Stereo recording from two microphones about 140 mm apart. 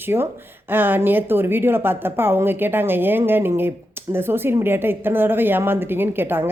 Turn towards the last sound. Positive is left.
turn(degrees=-15)  # may be behind; listen again after turning